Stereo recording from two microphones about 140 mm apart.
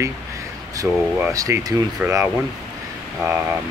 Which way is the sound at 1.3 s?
25° right (ahead or behind).